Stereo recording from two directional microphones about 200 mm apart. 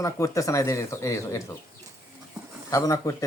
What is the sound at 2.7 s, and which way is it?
Speech, 15° left (ahead or behind).